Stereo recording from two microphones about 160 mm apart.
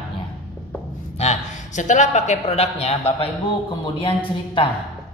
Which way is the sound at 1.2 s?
45° left (ahead or behind).